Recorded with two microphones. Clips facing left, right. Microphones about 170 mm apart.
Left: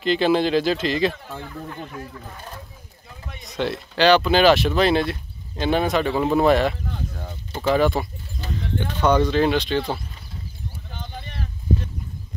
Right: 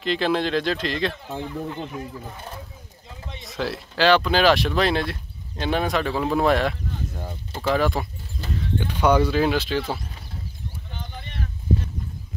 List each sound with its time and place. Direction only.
0.0 s speech: centre (ahead or behind)
1.2 s speech: 20° right (ahead or behind)
3.4 s speech: centre (ahead or behind)
7.2 s a sound: 10° right (ahead or behind)
7.6 s speech: centre (ahead or behind)
8.7 s speech: 10° right (ahead or behind)